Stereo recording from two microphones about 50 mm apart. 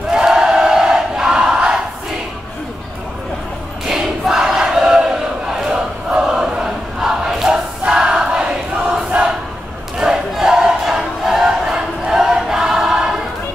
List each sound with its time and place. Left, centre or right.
0.1 s battle cry: centre
3.8 s battle cry: centre
5.5 s crowd: centre
9.9 s crowd: centre